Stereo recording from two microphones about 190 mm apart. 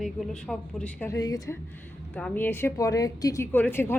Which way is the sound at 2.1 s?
5° left (ahead or behind).